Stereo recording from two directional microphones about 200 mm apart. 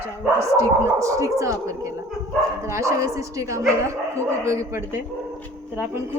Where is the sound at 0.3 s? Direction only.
15° right (ahead or behind).